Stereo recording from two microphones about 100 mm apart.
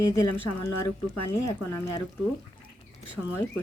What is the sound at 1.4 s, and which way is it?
Speech, 35° left (ahead or behind).